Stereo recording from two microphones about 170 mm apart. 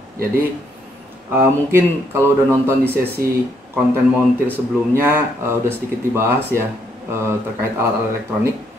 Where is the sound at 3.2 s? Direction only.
60° right (ahead or behind).